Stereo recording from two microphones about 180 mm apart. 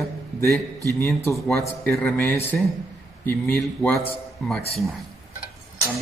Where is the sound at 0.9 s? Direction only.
15° left (ahead or behind).